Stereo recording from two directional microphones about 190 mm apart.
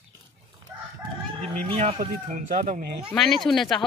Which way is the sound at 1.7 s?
30° right (ahead or behind).